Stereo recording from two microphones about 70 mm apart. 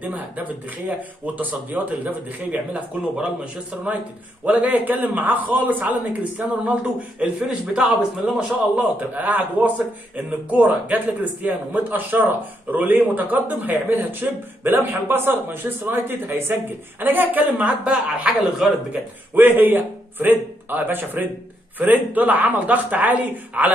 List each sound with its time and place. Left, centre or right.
0.0 s a man's voice: right
7.8 s a man's voice: centre
8.7 s a man's voice: right
19.3 s a man's voice: right